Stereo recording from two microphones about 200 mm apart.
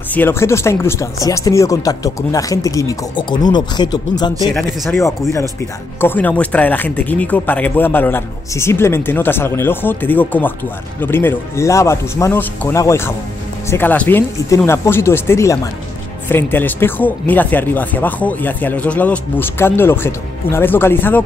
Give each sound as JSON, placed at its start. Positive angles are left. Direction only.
{"t": 0.1, "sound": "speech", "side_deg": 10}
{"t": 5.9, "sound": "speech", "side_deg": 10}